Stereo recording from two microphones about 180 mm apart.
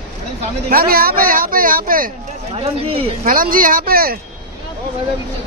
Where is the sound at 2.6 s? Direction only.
30° right (ahead or behind).